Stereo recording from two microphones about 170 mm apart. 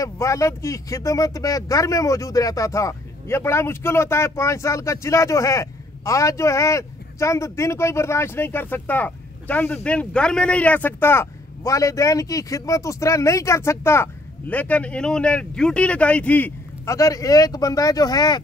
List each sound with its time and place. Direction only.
0.0 s speech: 20° left (ahead or behind)